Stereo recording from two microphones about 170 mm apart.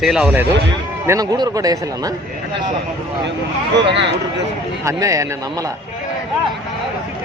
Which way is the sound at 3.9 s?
90° right.